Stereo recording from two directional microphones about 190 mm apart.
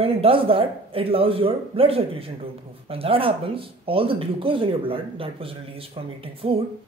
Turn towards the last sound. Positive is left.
turn(degrees=-30)  # may be behind; listen again after turning